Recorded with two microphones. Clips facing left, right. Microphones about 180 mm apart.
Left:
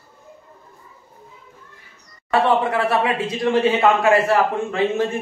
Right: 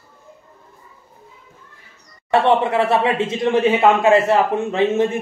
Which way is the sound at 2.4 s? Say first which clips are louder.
Right 3 dB; 25° right (ahead or behind).